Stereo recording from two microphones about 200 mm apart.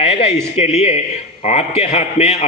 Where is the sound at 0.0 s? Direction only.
30° left (ahead or behind).